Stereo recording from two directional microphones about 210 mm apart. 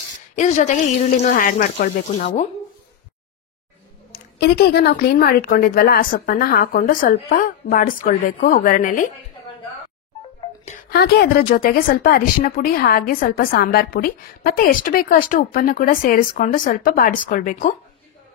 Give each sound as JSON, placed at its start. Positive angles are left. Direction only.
{"t": 0.4, "sound": "a woman's voice", "side_deg": 35}
{"t": 4.1, "sound": "a woman's voice", "side_deg": 50}
{"t": 10.6, "sound": "a woman's voice", "side_deg": 35}